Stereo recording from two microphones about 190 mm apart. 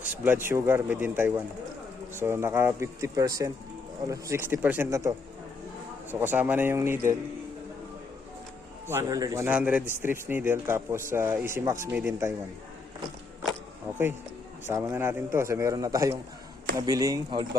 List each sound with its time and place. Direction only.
0.1 s speech: 10° right (ahead or behind)
8.9 s speech: 15° right (ahead or behind)
14.7 s speech: 15° right (ahead or behind)